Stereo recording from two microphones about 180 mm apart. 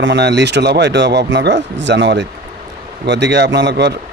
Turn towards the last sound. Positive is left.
turn(degrees=-70)  # may be behind; listen again after turning